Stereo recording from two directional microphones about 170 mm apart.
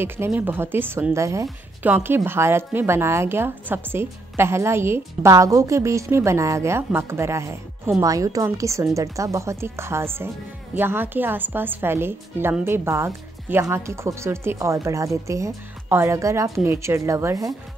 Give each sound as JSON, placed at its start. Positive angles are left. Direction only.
{"t": 0.0, "sound": "speech", "side_deg": -10}